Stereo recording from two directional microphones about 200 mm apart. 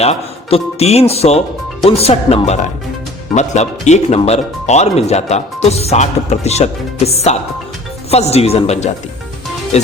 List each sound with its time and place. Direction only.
0.0 s speech: 30° left (ahead or behind)